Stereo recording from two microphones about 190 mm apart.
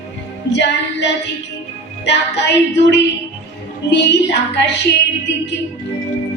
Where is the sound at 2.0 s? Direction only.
65° left (ahead or behind).